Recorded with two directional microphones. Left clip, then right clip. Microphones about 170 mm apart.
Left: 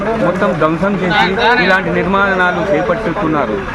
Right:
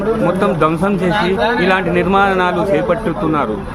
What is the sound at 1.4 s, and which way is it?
Speech, 90° right.